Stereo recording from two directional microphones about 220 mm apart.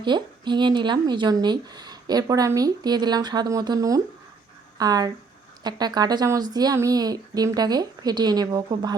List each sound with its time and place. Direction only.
0.0 s a woman's voice: 20° right (ahead or behind)